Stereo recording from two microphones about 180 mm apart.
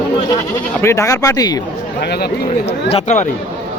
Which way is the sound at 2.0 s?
65° left (ahead or behind).